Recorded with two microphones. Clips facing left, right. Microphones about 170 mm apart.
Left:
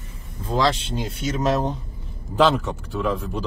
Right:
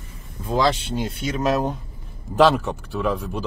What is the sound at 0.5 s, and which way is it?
Speech, centre (ahead or behind).